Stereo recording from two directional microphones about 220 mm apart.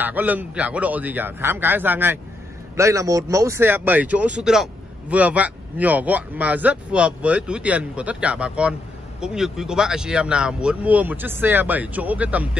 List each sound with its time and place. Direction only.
0.0 s speech: 10° right (ahead or behind)